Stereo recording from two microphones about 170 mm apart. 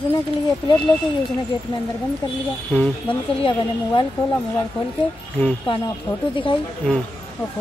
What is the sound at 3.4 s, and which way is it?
Speech, 30° left (ahead or behind).